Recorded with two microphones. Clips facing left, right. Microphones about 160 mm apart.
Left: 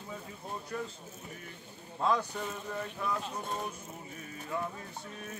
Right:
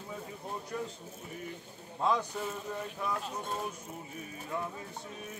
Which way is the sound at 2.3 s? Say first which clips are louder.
Right 1 dB; 5° right (ahead or behind).